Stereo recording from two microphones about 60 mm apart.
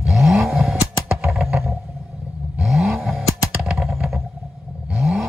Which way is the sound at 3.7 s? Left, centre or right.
Centre.